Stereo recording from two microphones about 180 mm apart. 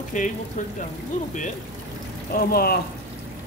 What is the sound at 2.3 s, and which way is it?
Speech, 60° left (ahead or behind).